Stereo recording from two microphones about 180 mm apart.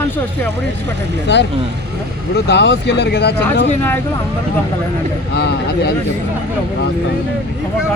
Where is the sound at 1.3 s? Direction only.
75° left (ahead or behind).